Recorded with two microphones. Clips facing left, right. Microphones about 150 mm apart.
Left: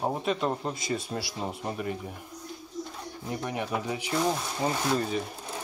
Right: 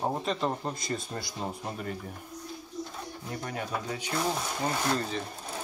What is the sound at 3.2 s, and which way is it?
Speech, 20° left (ahead or behind).